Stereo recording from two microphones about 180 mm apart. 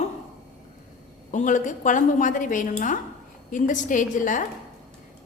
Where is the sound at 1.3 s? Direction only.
45° left (ahead or behind).